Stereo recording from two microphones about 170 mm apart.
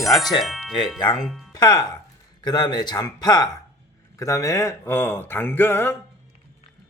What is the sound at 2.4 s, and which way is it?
Speech, 25° left (ahead or behind).